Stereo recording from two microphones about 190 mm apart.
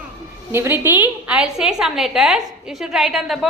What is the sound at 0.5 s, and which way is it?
A woman's voice, 15° right (ahead or behind).